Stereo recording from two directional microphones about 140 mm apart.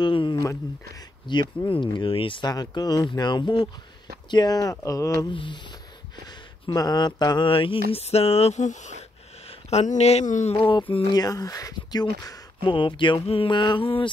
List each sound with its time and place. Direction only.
0.0 s a sound: 35° left (ahead or behind)
1.2 s speech: 30° left (ahead or behind)
5.2 s speech: 35° left (ahead or behind)
6.6 s speech: 25° left (ahead or behind)
11.2 s speech: 25° left (ahead or behind)